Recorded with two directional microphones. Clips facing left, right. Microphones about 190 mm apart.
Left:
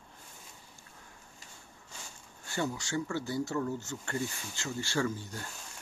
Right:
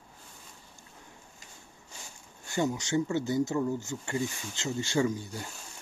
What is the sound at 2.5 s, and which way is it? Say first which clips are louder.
Speech: right 5 dB; 20° right (ahead or behind).